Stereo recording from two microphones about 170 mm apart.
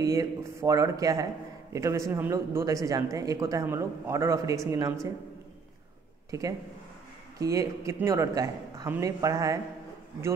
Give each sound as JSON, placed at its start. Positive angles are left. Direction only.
{"t": 0.0, "sound": "speech", "side_deg": -20}
{"t": 6.3, "sound": "speech", "side_deg": -20}